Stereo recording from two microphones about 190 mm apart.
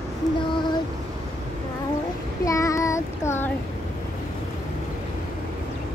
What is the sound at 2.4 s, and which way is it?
Child singing, 15° left (ahead or behind).